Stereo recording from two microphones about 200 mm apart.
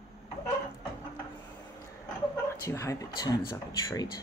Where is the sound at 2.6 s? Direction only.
15° left (ahead or behind).